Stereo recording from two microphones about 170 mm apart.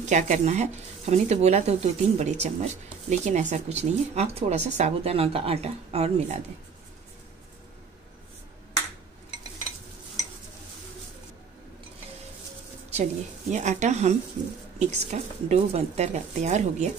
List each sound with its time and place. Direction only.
0.0 s speech: 45° right (ahead or behind)
12.9 s a woman's voice: 45° right (ahead or behind)